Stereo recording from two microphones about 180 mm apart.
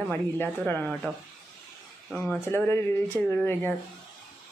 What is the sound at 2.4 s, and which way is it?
Speech, 15° left (ahead or behind).